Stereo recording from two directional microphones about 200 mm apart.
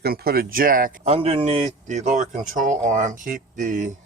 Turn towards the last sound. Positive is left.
turn(degrees=-40)  # may be behind; listen again after turning